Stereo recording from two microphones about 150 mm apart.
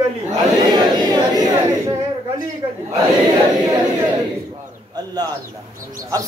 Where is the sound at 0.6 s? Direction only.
30° right (ahead or behind).